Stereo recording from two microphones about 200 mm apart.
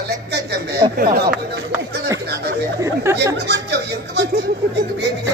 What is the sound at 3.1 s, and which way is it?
Speech, 15° right (ahead or behind).